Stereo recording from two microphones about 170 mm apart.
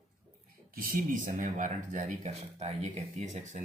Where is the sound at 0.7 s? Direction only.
55° right (ahead or behind).